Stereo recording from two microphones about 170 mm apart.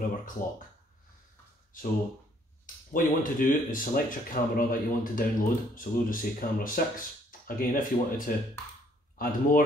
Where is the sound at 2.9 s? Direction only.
50° left (ahead or behind).